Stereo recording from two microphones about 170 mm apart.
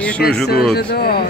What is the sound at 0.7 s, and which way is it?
Speech, 65° left (ahead or behind).